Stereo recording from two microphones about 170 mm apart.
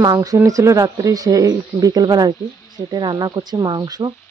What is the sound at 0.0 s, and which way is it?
Speech, 20° right (ahead or behind).